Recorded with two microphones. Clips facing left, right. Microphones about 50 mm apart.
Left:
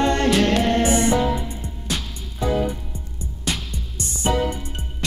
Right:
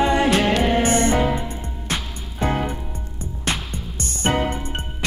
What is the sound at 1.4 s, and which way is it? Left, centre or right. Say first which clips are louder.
Music: right 1 dB; right.